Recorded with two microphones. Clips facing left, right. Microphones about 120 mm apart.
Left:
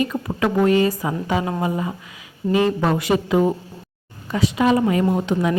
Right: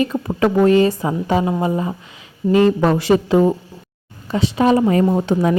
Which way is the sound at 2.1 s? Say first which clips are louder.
Right 4 dB; 30° right (ahead or behind).